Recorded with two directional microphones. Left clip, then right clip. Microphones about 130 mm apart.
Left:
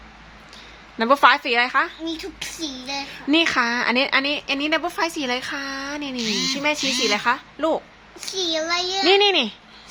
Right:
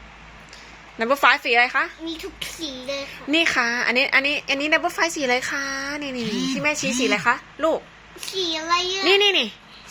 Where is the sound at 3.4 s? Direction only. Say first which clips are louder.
Even; 20° left (ahead or behind); by 6.0 s centre (ahead or behind).